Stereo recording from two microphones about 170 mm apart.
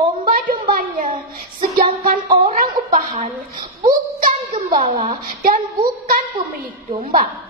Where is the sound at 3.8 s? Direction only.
60° right (ahead or behind).